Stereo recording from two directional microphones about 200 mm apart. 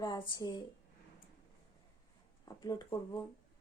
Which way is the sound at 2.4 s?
20° left (ahead or behind).